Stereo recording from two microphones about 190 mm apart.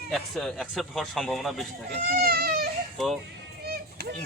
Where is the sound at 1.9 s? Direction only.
55° right (ahead or behind).